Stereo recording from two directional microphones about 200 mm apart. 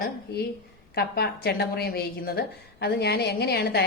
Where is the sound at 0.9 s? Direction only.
55° left (ahead or behind).